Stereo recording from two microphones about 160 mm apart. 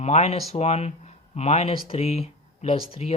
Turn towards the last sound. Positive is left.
turn(degrees=35)  # may be behind; listen again after turning